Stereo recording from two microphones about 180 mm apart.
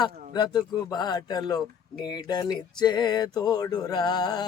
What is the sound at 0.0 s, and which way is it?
Speech, 20° left (ahead or behind).